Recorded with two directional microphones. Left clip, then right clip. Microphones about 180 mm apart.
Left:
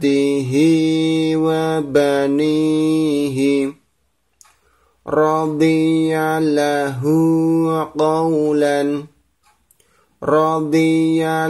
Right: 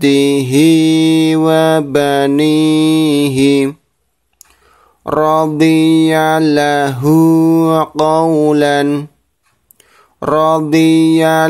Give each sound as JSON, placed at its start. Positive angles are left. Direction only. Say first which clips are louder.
{"t": 0.0, "sound": "mantra", "louder": "right 5 dB", "side_deg": -35}
{"t": 5.0, "sound": "mantra", "louder": "right 5 dB", "side_deg": -40}
{"t": 10.1, "sound": "mantra", "louder": "right 4 dB", "side_deg": -40}